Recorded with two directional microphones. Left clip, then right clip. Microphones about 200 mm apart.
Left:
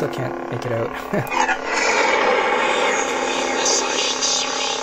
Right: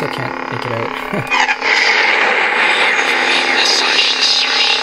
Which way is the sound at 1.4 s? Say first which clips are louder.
Right 8 dB; 20° right (ahead or behind).